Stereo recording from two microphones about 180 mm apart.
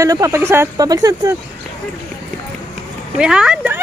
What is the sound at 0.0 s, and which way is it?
Speech, 15° right (ahead or behind).